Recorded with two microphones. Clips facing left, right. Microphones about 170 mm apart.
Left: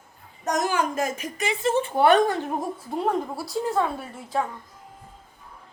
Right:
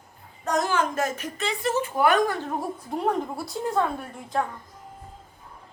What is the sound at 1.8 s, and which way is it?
Speech, 30° left (ahead or behind).